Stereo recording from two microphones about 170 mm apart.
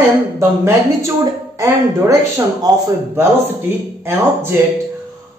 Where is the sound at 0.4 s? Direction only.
15° right (ahead or behind).